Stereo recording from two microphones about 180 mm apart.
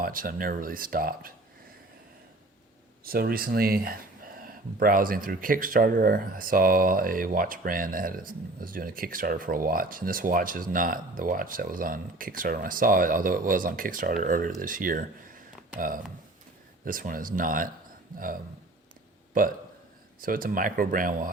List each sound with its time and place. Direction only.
0.0 s speech: 50° right (ahead or behind)
3.0 s speech: 55° right (ahead or behind)
16.8 s speech: 50° right (ahead or behind)
19.3 s a man's voice: 50° right (ahead or behind)